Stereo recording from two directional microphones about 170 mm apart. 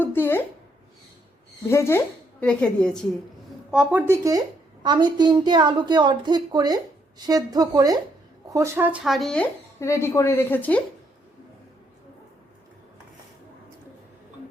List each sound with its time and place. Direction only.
0.0 s a sound: 10° left (ahead or behind)
1.7 s a woman's voice: 15° left (ahead or behind)
3.7 s a woman's voice: 5° right (ahead or behind)
9.8 s a woman's voice: 15° left (ahead or behind)